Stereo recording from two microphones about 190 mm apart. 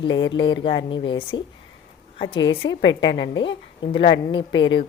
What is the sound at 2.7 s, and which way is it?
Speech, 75° left (ahead or behind).